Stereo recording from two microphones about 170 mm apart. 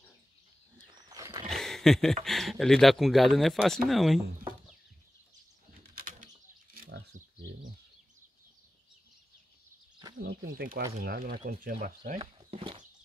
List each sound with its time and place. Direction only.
0.8 s wild animals: 25° right (ahead or behind)
1.5 s a sound: centre (ahead or behind)
2.2 s speech: centre (ahead or behind)
5.9 s bird: 55° right (ahead or behind)
10.2 s speech: 60° right (ahead or behind)
12.2 s speech: 35° right (ahead or behind)